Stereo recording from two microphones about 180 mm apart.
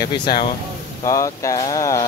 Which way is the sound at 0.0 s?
25° left (ahead or behind).